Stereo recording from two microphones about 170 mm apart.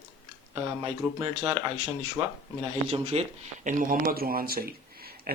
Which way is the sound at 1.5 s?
30° right (ahead or behind).